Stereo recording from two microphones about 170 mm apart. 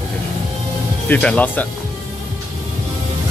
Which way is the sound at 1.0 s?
10° left (ahead or behind).